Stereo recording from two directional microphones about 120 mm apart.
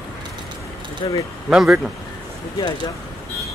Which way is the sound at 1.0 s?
40° left (ahead or behind).